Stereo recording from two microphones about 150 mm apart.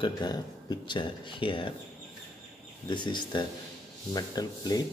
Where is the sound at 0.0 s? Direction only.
30° left (ahead or behind).